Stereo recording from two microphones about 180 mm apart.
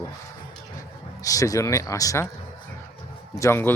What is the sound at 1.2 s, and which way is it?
Speech, 20° left (ahead or behind).